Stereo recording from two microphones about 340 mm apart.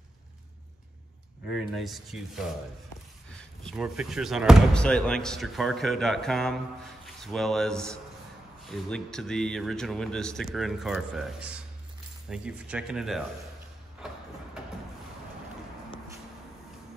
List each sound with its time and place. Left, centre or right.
1.5 s speech: centre
3.6 s speech: centre